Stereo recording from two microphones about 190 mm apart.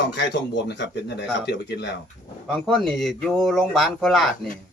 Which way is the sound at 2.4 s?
Centre (ahead or behind).